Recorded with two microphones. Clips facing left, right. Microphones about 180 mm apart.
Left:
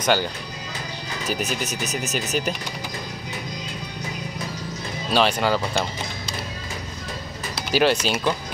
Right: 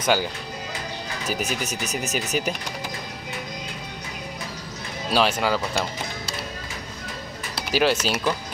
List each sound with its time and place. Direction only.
0.0 s speech: 5° right (ahead or behind)
1.3 s speech: 10° right (ahead or behind)
5.1 s speech: 5° right (ahead or behind)
7.7 s speech: centre (ahead or behind)